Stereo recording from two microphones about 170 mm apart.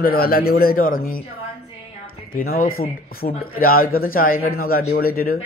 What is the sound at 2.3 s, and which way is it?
A man's voice, 60° left (ahead or behind).